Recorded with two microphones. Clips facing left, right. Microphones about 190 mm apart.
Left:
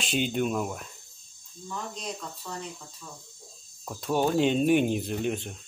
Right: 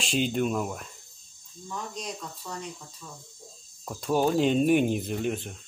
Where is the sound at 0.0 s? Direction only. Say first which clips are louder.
Right 1 dB; centre (ahead or behind).